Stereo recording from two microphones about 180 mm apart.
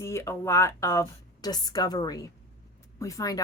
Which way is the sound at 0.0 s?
15° left (ahead or behind).